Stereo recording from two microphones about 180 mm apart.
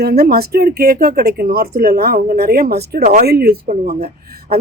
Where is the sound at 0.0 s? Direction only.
65° right (ahead or behind).